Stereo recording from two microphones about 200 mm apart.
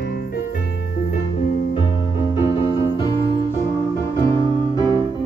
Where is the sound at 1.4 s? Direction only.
35° left (ahead or behind).